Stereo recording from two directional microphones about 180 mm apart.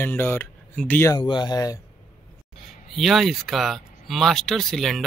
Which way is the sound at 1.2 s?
25° left (ahead or behind).